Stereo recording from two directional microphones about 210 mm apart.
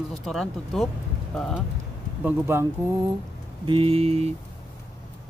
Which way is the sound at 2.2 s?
10° right (ahead or behind).